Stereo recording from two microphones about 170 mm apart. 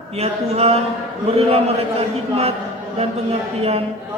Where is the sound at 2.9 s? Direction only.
40° right (ahead or behind).